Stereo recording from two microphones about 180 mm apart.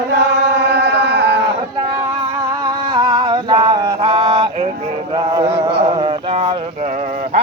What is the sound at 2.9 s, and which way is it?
Male singing, 25° right (ahead or behind).